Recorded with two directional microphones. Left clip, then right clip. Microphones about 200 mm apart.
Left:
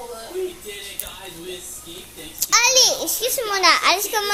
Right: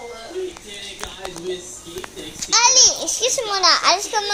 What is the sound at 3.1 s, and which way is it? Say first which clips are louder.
Speech: right 3 dB; centre (ahead or behind).